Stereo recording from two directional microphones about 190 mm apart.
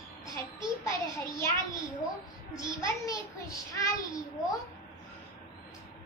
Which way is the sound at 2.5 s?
15° left (ahead or behind).